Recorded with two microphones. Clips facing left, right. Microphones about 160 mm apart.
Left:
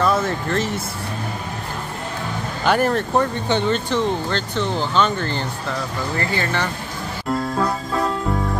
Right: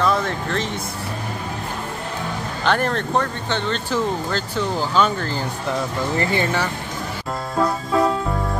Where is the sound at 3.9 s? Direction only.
5° right (ahead or behind).